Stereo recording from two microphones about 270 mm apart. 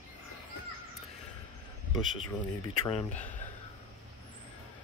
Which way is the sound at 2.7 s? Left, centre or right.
Left.